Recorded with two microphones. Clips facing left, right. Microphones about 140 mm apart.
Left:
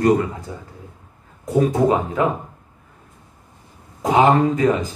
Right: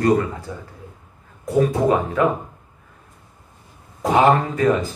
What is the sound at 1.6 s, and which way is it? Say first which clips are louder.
Speech: left 1 dB; 20° left (ahead or behind).